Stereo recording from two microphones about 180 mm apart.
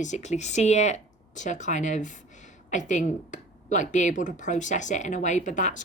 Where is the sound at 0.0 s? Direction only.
40° left (ahead or behind).